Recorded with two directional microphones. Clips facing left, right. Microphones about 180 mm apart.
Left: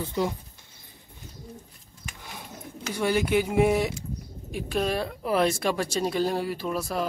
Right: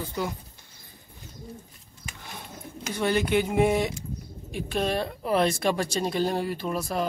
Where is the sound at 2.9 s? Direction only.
10° left (ahead or behind).